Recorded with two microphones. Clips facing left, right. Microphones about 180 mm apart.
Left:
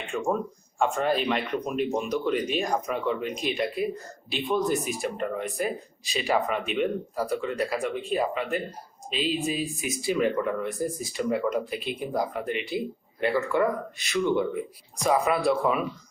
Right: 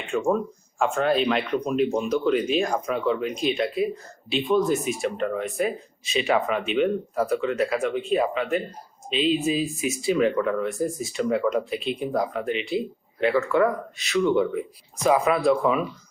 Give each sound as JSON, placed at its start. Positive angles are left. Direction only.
{"t": 0.1, "sound": "speech", "side_deg": 0}